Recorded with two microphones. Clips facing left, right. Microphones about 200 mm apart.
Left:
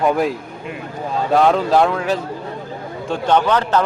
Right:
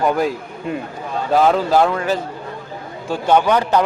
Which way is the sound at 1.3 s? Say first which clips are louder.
Even; centre (ahead or behind).